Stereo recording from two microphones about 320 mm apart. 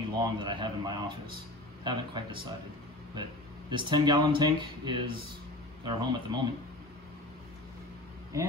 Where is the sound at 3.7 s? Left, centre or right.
Centre.